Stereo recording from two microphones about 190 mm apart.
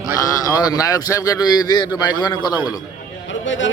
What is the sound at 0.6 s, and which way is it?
A man's voice, 20° left (ahead or behind).